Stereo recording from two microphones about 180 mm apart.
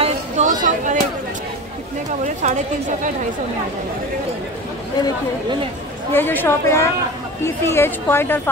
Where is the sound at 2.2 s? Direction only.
40° right (ahead or behind).